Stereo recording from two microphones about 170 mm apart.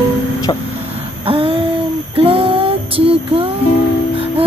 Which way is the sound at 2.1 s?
30° right (ahead or behind).